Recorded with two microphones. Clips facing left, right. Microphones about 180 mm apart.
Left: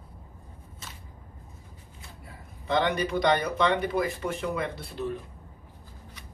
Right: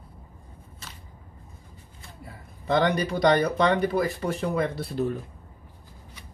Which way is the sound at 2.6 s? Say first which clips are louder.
Right 3 dB; 40° right (ahead or behind).